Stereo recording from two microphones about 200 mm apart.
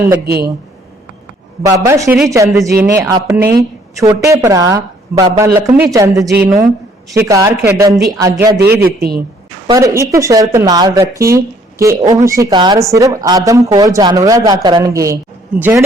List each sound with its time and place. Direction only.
1.6 s a woman's voice: 15° right (ahead or behind)
8.7 s a man's voice: 50° right (ahead or behind)
9.7 s speech: 15° right (ahead or behind)